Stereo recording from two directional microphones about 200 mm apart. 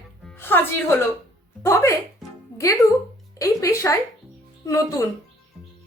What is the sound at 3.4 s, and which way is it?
A woman's voice, 15° left (ahead or behind).